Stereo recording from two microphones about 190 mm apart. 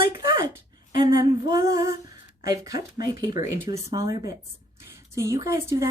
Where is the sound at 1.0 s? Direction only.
25° right (ahead or behind).